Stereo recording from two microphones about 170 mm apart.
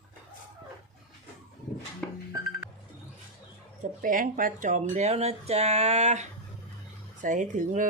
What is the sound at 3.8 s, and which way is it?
Speech, 55° right (ahead or behind).